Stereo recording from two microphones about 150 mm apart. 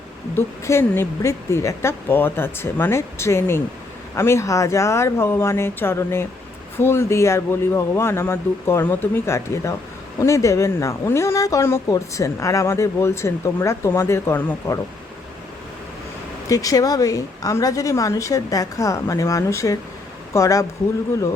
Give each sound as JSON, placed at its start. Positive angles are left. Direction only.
{"t": 0.3, "sound": "a woman's voice", "side_deg": 15}
{"t": 16.5, "sound": "a woman's voice", "side_deg": 25}